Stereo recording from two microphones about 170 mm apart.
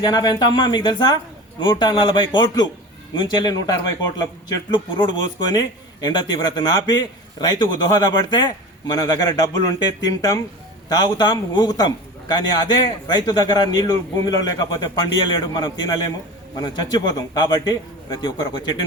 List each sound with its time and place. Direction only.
0.0 s speech: 25° left (ahead or behind)